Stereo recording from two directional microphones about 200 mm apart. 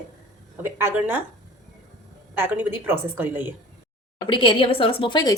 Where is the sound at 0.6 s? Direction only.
10° right (ahead or behind).